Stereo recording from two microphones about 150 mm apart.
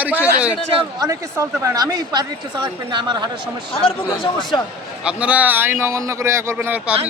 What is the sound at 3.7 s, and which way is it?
Speech, 35° left (ahead or behind).